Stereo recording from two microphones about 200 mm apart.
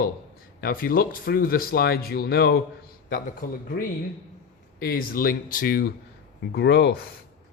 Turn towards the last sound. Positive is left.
turn(degrees=60)  # may be behind; listen again after turning